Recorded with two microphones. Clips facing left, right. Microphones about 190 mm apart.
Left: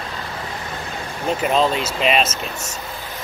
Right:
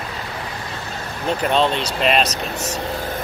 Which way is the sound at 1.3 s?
5° left (ahead or behind).